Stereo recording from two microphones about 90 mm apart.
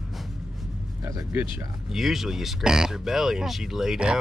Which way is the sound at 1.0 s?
40° right (ahead or behind).